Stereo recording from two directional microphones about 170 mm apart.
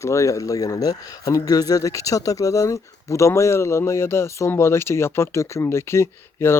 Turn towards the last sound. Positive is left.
turn(degrees=15)  # may be behind; listen again after turning